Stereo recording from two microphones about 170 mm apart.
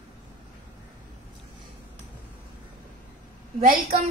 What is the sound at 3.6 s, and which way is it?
Speech, 55° right (ahead or behind).